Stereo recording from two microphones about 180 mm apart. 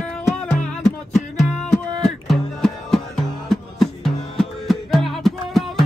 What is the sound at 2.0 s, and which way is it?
Music, 5° left (ahead or behind).